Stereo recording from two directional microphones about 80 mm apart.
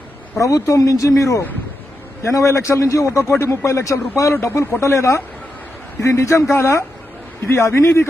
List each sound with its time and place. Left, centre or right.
0.4 s a man's voice: left